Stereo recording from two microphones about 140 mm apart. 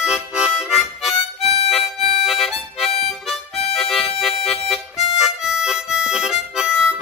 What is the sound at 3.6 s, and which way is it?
Harmonica, 45° left (ahead or behind).